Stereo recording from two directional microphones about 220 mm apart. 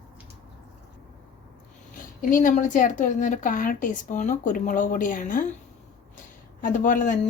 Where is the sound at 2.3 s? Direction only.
35° left (ahead or behind).